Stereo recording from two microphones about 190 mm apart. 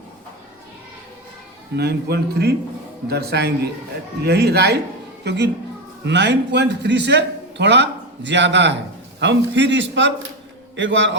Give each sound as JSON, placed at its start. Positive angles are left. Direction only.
{"t": 1.7, "sound": "a man's voice", "side_deg": -60}